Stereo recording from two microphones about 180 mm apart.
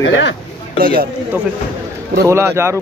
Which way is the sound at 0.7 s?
55° right (ahead or behind).